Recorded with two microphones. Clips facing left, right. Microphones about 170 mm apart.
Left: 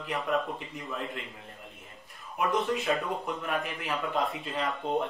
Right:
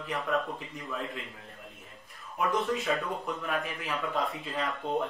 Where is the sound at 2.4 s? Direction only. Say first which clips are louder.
Left 1 dB; centre (ahead or behind).